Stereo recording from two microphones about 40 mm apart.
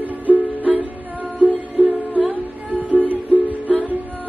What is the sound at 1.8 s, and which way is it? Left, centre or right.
Music, right.